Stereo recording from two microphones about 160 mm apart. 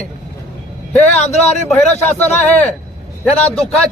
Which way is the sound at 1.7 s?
10° left (ahead or behind).